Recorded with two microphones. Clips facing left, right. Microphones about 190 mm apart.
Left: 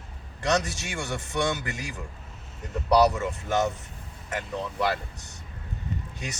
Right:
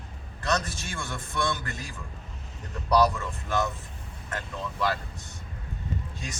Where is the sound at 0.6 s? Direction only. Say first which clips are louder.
Left 3 dB; 75° left (ahead or behind).